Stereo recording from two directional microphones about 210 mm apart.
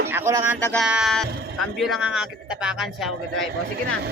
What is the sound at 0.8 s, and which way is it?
Speech, 5° right (ahead or behind).